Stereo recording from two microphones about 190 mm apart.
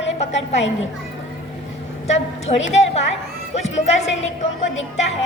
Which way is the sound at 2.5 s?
35° left (ahead or behind).